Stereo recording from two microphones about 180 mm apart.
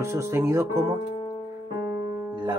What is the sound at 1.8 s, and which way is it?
Music, 25° right (ahead or behind).